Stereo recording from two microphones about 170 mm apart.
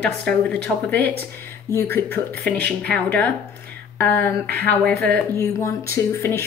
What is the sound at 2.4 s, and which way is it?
Speech, 5° left (ahead or behind).